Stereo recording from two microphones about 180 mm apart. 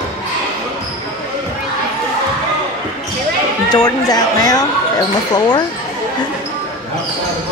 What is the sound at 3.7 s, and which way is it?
Speech, 20° left (ahead or behind).